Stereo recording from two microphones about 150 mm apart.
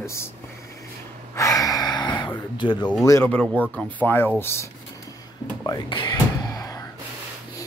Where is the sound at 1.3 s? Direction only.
20° left (ahead or behind).